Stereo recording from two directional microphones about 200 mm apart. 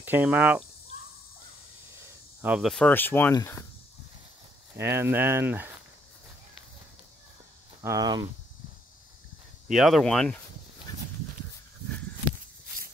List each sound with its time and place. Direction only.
0.0 s speech: 10° right (ahead or behind)
2.4 s speech: 5° right (ahead or behind); by 3.6 s 15° left (ahead or behind)
4.7 s speech: 10° right (ahead or behind)
7.8 s speech: 20° right (ahead or behind)
9.7 s speech: centre (ahead or behind)